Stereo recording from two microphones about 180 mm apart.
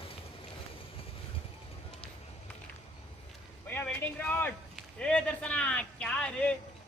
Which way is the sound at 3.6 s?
10° left (ahead or behind).